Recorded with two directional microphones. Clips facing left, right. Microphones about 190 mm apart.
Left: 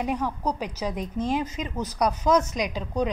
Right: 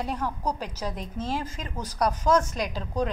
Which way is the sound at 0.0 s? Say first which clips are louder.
Left 3 dB; 10° left (ahead or behind).